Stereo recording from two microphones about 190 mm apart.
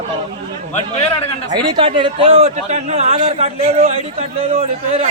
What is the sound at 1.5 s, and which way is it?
A man's voice, 25° right (ahead or behind).